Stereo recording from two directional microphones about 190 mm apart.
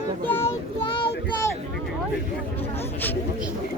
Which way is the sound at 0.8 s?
25° left (ahead or behind).